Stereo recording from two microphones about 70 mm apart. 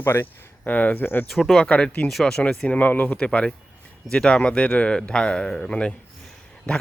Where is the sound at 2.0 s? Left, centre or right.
Centre.